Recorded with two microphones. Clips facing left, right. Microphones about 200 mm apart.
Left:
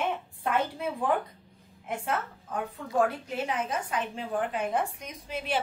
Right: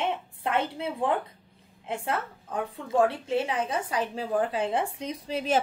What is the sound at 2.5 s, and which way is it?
A woman's voice, 30° right (ahead or behind).